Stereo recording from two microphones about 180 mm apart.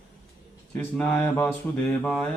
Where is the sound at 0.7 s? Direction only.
10° left (ahead or behind).